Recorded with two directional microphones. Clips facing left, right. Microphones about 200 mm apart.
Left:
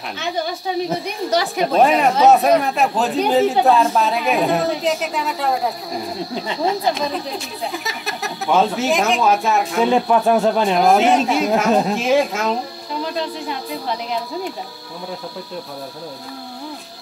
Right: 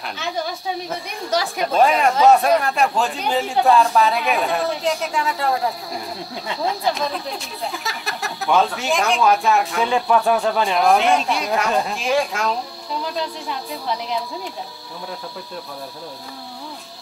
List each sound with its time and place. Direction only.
0.8 s speech: centre (ahead or behind)
9.8 s speech: 20° left (ahead or behind)
10.8 s speech: centre (ahead or behind)